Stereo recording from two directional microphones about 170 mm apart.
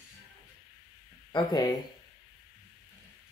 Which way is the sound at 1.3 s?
25° left (ahead or behind).